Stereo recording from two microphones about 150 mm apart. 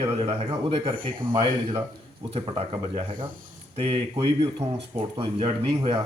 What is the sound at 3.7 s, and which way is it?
A man's voice, 40° right (ahead or behind).